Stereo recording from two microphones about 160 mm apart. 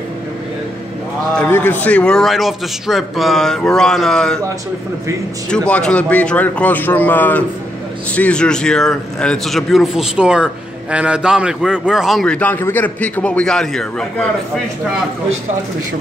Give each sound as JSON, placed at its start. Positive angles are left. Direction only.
{"t": 1.3, "sound": "a man's voice", "side_deg": 10}
{"t": 5.5, "sound": "a man's voice", "side_deg": 5}